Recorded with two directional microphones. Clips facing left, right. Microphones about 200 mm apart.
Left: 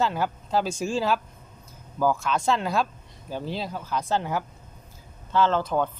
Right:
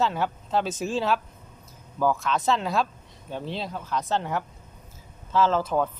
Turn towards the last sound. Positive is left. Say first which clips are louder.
# even
turn(degrees=-5)  # may be behind; listen again after turning